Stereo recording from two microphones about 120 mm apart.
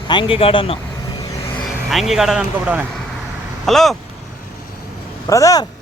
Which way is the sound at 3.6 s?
Centre (ahead or behind).